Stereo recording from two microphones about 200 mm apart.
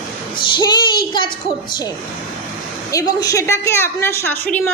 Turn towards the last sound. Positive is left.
turn(degrees=10)  # may be behind; listen again after turning